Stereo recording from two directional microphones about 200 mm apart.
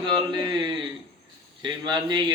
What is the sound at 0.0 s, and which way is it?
Speech, 25° right (ahead or behind).